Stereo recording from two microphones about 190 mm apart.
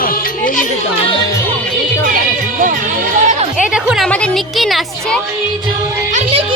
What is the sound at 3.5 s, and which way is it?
A woman's voice, 5° right (ahead or behind).